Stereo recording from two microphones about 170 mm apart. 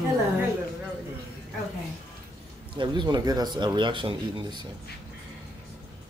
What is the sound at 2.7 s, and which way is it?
A woman's voice, 25° right (ahead or behind).